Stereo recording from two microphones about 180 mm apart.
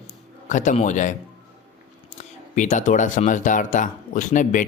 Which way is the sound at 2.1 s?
45° left (ahead or behind).